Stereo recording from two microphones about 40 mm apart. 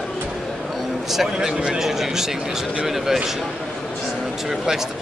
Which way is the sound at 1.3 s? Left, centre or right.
Centre.